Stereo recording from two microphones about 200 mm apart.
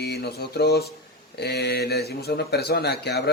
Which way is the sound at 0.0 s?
55° left (ahead or behind).